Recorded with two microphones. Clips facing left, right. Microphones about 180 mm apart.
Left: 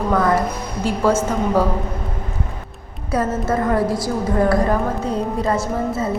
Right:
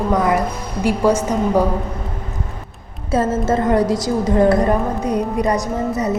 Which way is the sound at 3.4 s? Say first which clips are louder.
Right 3 dB; 20° right (ahead or behind).